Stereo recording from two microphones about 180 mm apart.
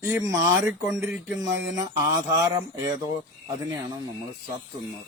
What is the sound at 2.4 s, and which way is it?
Speech, 20° right (ahead or behind).